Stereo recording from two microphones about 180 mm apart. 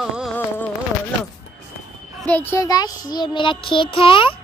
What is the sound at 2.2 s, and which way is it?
A woman's voice, 10° left (ahead or behind).